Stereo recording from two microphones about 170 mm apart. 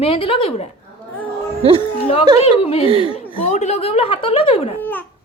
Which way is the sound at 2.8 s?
30° right (ahead or behind).